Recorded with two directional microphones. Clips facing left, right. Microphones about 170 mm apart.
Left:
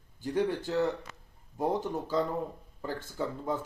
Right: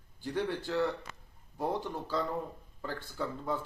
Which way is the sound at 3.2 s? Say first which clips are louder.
Left 2 dB; 20° left (ahead or behind).